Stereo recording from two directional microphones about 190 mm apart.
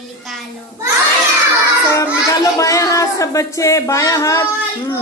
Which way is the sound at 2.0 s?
15° left (ahead or behind).